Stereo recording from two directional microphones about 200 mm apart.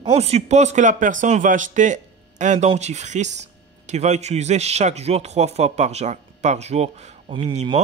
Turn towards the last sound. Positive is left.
turn(degrees=-30)  # may be behind; listen again after turning